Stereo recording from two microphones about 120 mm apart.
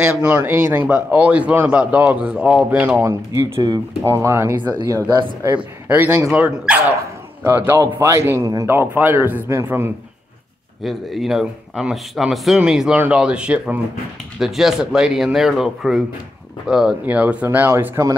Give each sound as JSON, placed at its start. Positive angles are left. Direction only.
{"t": 0.0, "sound": "speech", "side_deg": -10}
{"t": 3.5, "sound": "speech", "side_deg": -40}
{"t": 4.0, "sound": "a man's voice", "side_deg": -25}
{"t": 4.7, "sound": "speech", "side_deg": -35}
{"t": 5.5, "sound": "a man's voice", "side_deg": -15}
{"t": 10.8, "sound": "speech", "side_deg": 0}